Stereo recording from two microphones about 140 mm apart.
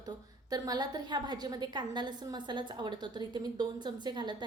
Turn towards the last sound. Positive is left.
turn(degrees=-30)  # may be behind; listen again after turning